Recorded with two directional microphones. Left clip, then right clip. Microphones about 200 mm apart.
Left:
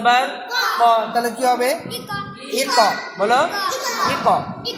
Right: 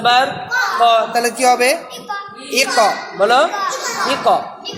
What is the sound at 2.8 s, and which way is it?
Speech, 30° right (ahead or behind).